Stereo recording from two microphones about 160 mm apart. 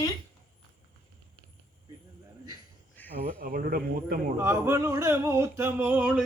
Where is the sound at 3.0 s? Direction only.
10° left (ahead or behind).